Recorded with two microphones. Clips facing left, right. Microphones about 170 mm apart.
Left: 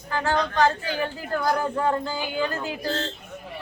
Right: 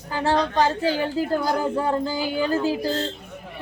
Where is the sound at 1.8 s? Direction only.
10° right (ahead or behind).